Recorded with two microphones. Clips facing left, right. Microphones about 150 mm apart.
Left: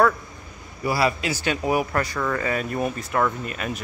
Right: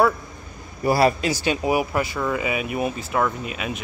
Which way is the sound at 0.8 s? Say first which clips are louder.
Right 4 dB; 50° right (ahead or behind).